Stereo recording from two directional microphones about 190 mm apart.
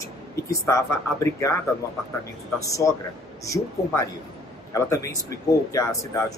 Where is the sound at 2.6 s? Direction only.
15° left (ahead or behind).